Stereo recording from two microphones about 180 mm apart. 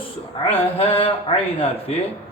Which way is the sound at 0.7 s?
30° left (ahead or behind).